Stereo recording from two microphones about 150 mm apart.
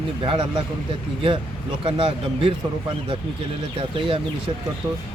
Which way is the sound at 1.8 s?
35° right (ahead or behind).